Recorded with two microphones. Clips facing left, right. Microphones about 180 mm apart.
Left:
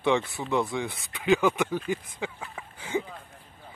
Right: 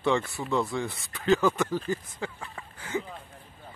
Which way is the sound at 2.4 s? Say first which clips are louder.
Left 1 dB; 5° left (ahead or behind).